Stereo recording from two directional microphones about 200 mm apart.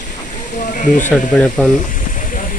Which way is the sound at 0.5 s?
40° left (ahead or behind).